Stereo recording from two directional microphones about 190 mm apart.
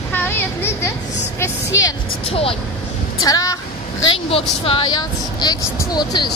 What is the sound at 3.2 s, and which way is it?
Speech, 20° left (ahead or behind).